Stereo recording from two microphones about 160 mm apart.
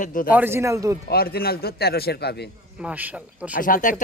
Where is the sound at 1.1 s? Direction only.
75° left (ahead or behind).